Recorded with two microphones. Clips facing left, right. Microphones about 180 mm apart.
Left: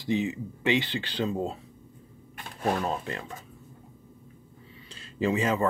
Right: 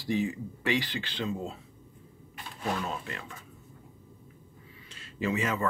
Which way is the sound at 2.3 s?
45° left (ahead or behind).